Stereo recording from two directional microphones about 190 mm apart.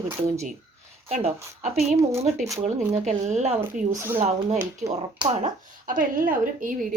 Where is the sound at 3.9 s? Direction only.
10° right (ahead or behind).